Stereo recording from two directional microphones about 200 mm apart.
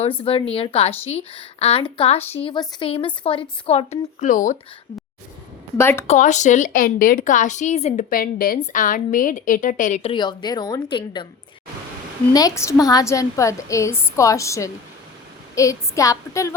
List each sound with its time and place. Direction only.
0.0 s a woman's voice: 25° left (ahead or behind)
5.7 s a woman's voice: 10° left (ahead or behind)
6.1 s a woman's voice: 35° left (ahead or behind)
12.3 s a woman's voice: 15° left (ahead or behind)